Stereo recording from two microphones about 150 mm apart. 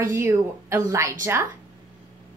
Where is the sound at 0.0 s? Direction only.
15° right (ahead or behind).